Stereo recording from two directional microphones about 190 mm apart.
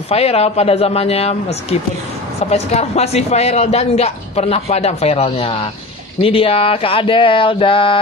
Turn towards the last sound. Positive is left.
turn(degrees=25)  # may be behind; listen again after turning